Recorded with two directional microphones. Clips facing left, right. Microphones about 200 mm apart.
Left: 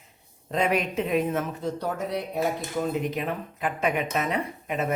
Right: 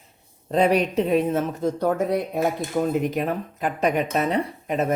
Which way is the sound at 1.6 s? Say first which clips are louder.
Right 7 dB; 50° right (ahead or behind).